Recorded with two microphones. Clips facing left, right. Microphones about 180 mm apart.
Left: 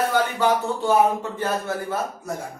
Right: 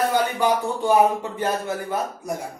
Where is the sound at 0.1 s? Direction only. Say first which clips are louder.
Even; 15° right (ahead or behind).